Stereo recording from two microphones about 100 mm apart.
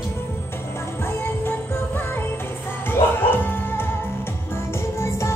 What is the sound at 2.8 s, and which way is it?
Music, 20° left (ahead or behind).